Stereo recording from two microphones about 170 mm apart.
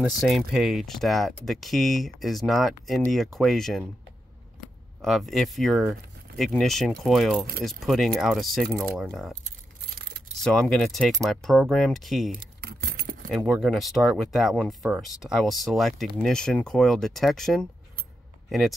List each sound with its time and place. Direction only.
0.0 s speech: centre (ahead or behind)
5.0 s speech: centre (ahead or behind)
10.4 s speech: 5° left (ahead or behind)
12.3 s keys jangling: 65° right (ahead or behind)
13.3 s speech: centre (ahead or behind)